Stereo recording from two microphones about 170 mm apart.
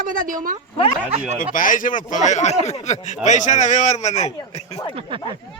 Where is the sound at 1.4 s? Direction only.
55° left (ahead or behind).